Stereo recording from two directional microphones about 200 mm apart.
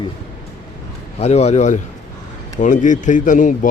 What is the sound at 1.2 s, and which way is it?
A man's voice, 30° left (ahead or behind).